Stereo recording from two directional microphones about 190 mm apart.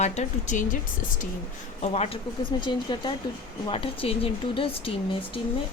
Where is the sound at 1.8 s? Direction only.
35° left (ahead or behind).